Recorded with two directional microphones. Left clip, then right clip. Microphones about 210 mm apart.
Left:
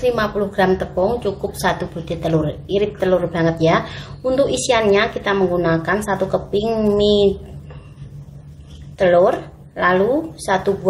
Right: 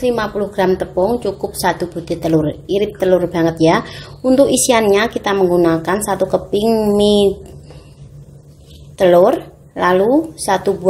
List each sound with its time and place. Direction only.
0.0 s a woman's voice: 25° right (ahead or behind)
8.9 s a woman's voice: 35° right (ahead or behind)